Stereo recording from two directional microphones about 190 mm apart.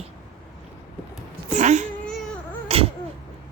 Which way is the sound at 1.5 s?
35° right (ahead or behind).